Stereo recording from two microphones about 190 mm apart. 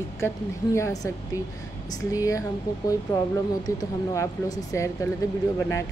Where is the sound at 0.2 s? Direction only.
15° left (ahead or behind).